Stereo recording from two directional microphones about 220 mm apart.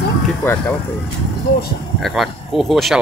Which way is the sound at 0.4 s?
10° left (ahead or behind).